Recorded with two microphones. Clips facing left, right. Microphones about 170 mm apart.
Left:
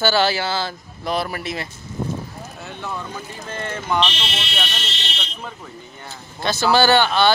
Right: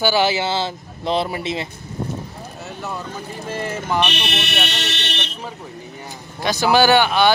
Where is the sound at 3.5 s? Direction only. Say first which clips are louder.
Right 1 dB; 5° right (ahead or behind).